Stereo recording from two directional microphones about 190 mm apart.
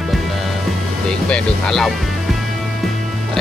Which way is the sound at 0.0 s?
Centre (ahead or behind).